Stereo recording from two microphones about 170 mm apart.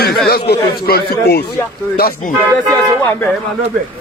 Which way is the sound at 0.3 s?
70° left (ahead or behind).